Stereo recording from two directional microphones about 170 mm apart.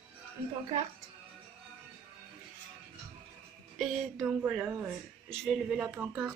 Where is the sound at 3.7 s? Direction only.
Centre (ahead or behind).